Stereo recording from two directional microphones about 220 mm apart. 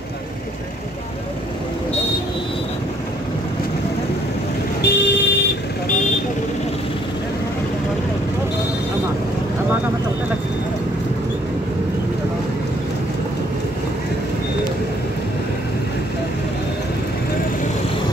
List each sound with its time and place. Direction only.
4.8 s vehicle: 50° left (ahead or behind)